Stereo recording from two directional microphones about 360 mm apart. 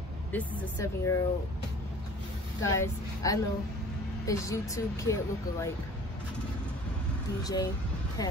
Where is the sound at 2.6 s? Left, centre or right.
Centre.